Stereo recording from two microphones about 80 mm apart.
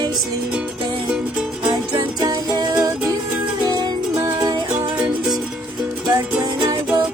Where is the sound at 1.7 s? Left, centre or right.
Right.